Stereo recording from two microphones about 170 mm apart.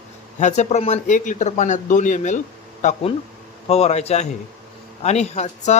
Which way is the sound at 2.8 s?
35° left (ahead or behind).